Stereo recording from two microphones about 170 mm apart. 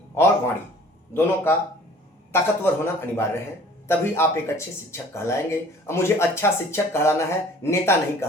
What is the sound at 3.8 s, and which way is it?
Speech, 15° left (ahead or behind).